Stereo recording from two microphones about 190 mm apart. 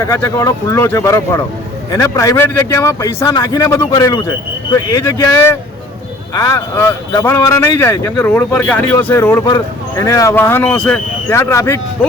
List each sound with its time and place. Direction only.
0.0 s a man's voice: 15° left (ahead or behind)